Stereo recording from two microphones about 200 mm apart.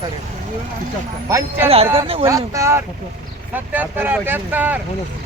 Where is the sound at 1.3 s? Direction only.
10° right (ahead or behind).